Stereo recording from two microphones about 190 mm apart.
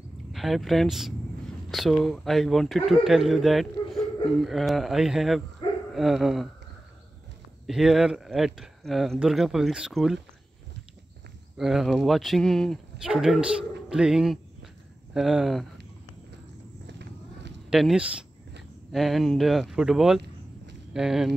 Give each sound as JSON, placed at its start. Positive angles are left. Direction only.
{"t": 0.3, "sound": "speech", "side_deg": 0}
{"t": 7.6, "sound": "speech", "side_deg": 0}
{"t": 11.5, "sound": "a man's voice", "side_deg": 0}
{"t": 16.8, "sound": "a sound", "side_deg": -65}
{"t": 17.6, "sound": "speech", "side_deg": 0}